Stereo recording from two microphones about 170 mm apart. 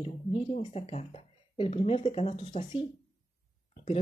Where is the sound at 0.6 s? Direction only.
35° left (ahead or behind).